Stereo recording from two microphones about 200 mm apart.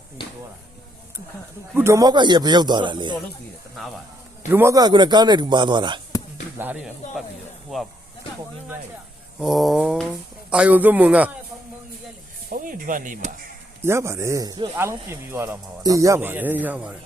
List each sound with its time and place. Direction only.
1.7 s a man's voice: 15° right (ahead or behind)
4.4 s a man's voice: 10° right (ahead or behind)
6.6 s speech: 5° right (ahead or behind)
9.4 s speech: centre (ahead or behind)
12.5 s speech: 45° right (ahead or behind)
13.8 s speech: 15° right (ahead or behind)